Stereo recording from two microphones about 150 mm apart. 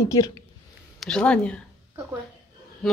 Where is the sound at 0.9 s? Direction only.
5° left (ahead or behind).